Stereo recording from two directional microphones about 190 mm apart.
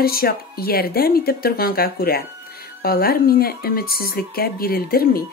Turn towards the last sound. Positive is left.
turn(degrees=50)  # may be behind; listen again after turning